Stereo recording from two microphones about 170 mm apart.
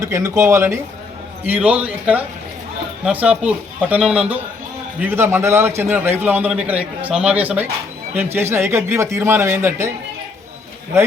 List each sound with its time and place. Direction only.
0.0 s a man's voice: 20° right (ahead or behind)